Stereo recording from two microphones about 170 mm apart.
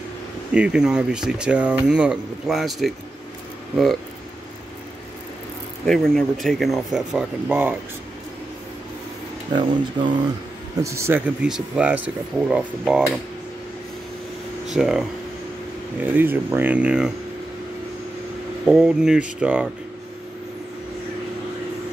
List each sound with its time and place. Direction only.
0.5 s speech: 5° right (ahead or behind)
5.9 s speech: 5° left (ahead or behind)
9.5 s speech: 25° right (ahead or behind)
10.8 s speech: 15° right (ahead or behind)
14.7 s speech: centre (ahead or behind)
18.7 s speech: 5° right (ahead or behind)